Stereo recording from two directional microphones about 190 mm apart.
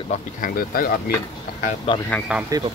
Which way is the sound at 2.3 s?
5° right (ahead or behind).